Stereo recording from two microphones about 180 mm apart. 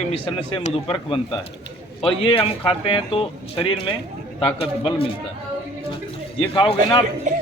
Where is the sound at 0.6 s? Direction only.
40° left (ahead or behind).